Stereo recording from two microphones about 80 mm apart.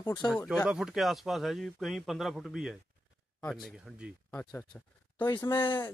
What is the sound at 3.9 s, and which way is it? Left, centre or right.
Speech, centre.